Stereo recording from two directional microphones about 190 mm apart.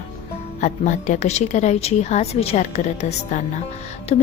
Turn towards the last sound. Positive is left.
turn(degrees=35)  # may be behind; listen again after turning